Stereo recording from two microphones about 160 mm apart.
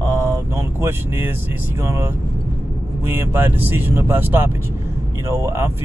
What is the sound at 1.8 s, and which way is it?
Speech, 15° right (ahead or behind).